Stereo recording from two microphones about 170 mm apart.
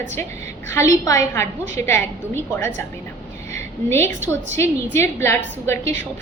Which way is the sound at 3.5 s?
15° left (ahead or behind).